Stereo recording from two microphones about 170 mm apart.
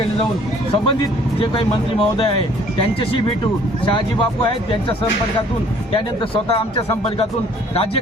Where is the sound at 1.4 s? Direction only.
30° left (ahead or behind).